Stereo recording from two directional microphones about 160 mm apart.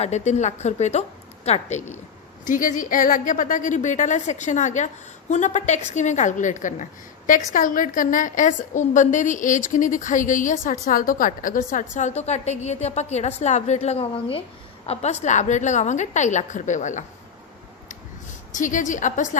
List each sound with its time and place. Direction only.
0.0 s a woman's voice: 45° left (ahead or behind)
2.4 s a woman's voice: 55° left (ahead or behind)
18.5 s a woman's voice: 55° left (ahead or behind)